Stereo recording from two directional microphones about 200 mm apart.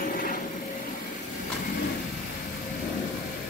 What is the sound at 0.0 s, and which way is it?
Vehicle, 45° left (ahead or behind).